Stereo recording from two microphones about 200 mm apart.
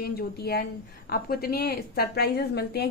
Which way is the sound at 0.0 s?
50° left (ahead or behind).